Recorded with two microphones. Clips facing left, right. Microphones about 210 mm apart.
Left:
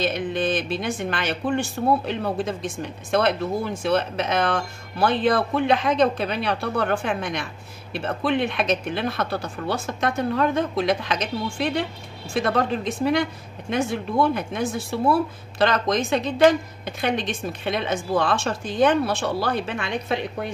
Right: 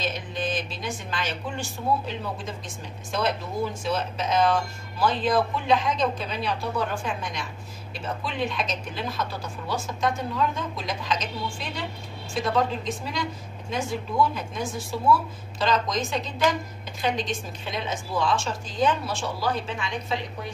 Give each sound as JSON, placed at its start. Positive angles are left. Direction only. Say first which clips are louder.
{"t": 0.0, "sound": "a woman's voice", "louder": "left 6 dB", "side_deg": 65}